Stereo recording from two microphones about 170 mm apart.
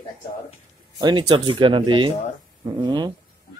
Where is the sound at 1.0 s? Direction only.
25° right (ahead or behind).